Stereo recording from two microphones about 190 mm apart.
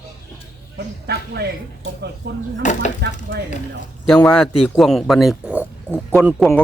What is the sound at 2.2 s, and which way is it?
Speech, 60° right (ahead or behind).